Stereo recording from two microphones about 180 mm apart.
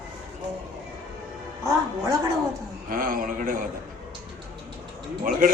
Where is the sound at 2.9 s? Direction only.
50° right (ahead or behind).